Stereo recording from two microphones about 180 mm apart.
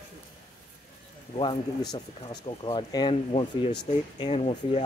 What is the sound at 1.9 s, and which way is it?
Speech, 25° left (ahead or behind).